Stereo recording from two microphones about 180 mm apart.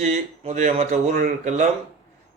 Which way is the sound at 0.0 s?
40° right (ahead or behind).